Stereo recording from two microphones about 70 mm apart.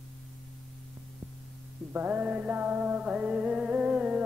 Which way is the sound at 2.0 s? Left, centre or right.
Right.